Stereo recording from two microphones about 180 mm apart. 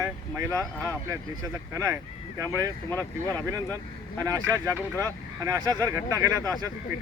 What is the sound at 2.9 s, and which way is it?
Speech, 15° left (ahead or behind).